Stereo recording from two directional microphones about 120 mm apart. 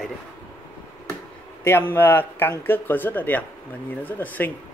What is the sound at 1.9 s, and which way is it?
Speech, 15° left (ahead or behind).